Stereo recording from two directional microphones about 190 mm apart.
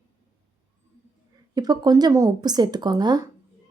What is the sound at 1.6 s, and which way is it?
Speech, 20° right (ahead or behind).